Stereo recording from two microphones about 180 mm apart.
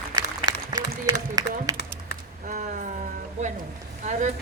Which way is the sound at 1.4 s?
20° right (ahead or behind).